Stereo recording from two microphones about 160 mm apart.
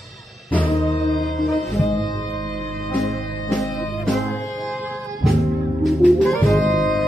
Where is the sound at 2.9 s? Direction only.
Centre (ahead or behind).